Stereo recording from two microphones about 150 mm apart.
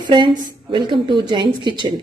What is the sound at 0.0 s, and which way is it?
A woman's voice, 30° right (ahead or behind).